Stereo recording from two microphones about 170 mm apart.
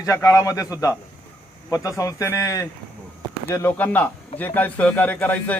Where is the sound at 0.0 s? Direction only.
20° left (ahead or behind).